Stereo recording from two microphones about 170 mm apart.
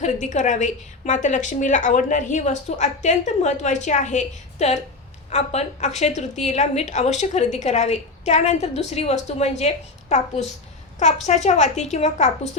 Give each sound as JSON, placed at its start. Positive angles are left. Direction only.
{"t": 0.0, "sound": "a woman's voice", "side_deg": 45}